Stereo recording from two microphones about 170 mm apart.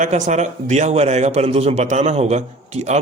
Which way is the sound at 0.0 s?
45° right (ahead or behind).